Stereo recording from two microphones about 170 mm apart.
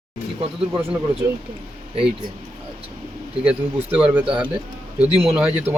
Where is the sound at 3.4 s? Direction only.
5° right (ahead or behind).